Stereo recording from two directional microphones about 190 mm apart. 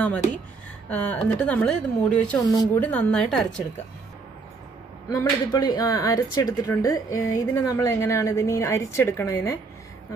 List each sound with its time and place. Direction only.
0.8 s speech: 5° left (ahead or behind)
2.3 s speech: 20° left (ahead or behind)
2.8 s a woman's voice: 10° left (ahead or behind)
5.1 s speech: 20° left (ahead or behind)